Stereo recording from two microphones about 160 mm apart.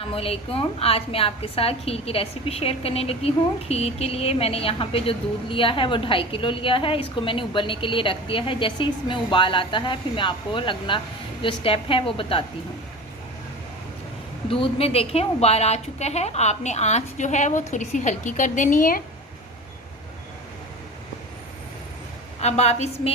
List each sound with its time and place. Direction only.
0.1 s a woman's voice: 35° left (ahead or behind)
14.6 s a woman's voice: 35° left (ahead or behind); by 19.0 s 60° left (ahead or behind)
22.4 s a woman's voice: 45° left (ahead or behind)